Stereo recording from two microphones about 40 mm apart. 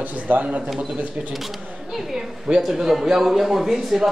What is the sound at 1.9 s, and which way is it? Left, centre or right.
A man's voice, centre.